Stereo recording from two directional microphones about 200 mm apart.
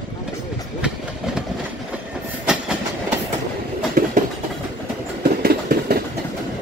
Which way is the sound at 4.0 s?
50° right (ahead or behind).